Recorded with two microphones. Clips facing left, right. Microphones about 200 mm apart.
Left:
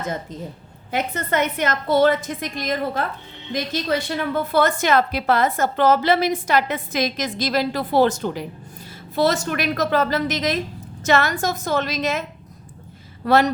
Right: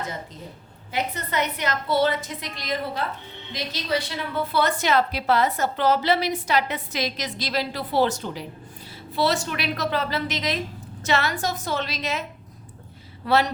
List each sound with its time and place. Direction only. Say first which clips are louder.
0.9 s a woman's voice: left 5 dB; 50° left (ahead or behind)
13.2 s a woman's voice: left 4 dB; 45° left (ahead or behind)